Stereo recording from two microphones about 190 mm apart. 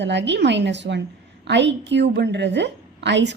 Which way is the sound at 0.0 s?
65° right (ahead or behind).